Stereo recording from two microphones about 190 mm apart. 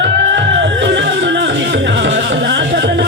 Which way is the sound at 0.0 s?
70° right (ahead or behind).